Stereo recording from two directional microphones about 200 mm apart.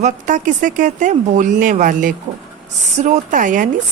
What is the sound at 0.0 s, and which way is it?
A woman's voice, 40° right (ahead or behind).